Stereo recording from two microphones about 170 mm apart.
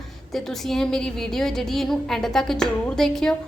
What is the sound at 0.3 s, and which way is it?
A woman's voice, centre (ahead or behind).